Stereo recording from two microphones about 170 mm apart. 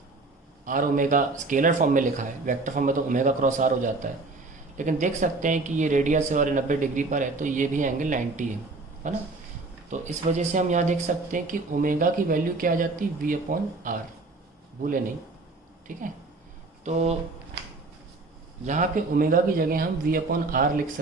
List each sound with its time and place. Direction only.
0.6 s speech: 55° right (ahead or behind)
18.6 s speech: 45° right (ahead or behind)